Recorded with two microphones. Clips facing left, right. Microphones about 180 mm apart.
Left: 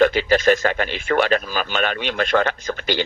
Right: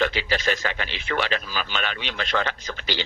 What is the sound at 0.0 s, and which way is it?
A woman's voice, 45° left (ahead or behind).